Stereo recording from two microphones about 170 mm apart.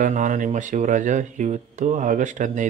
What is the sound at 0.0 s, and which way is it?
Speech, 50° right (ahead or behind).